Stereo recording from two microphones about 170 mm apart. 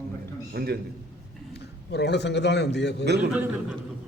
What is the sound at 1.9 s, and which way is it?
A man's voice, 85° left.